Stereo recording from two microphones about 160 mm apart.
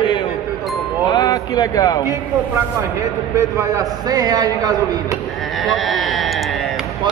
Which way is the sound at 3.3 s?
20° right (ahead or behind).